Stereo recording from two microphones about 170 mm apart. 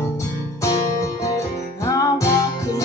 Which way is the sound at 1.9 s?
20° left (ahead or behind).